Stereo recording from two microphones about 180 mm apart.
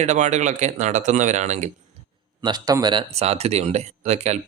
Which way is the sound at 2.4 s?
25° right (ahead or behind).